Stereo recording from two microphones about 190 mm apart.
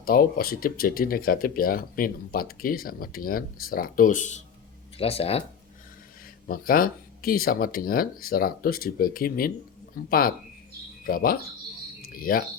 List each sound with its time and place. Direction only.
0.0 s speech: 50° left (ahead or behind); by 5.4 s 30° left (ahead or behind)
6.5 s speech: 50° left (ahead or behind)